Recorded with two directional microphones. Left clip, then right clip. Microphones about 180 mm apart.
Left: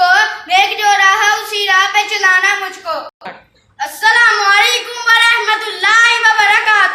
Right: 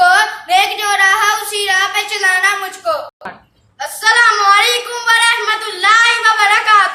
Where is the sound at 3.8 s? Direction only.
10° right (ahead or behind).